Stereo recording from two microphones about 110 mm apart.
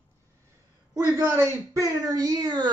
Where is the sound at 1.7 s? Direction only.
30° right (ahead or behind).